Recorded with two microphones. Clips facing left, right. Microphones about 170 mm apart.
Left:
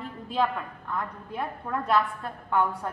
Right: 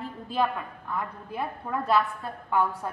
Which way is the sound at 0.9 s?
5° right (ahead or behind).